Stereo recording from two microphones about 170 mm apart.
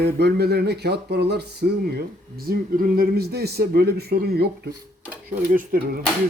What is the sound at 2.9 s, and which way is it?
Speech, 65° right (ahead or behind).